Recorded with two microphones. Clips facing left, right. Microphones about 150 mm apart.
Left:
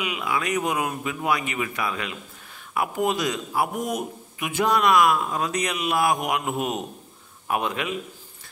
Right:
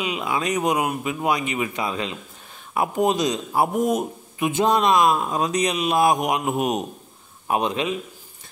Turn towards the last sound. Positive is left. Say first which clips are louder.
# right 3 dB
turn(degrees=-20)  # may be behind; listen again after turning